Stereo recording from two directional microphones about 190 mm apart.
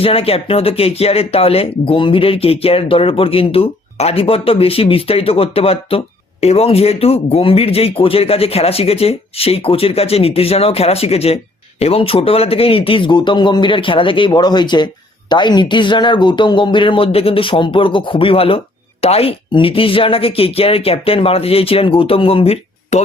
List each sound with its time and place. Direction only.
0.0 s speech: 30° left (ahead or behind)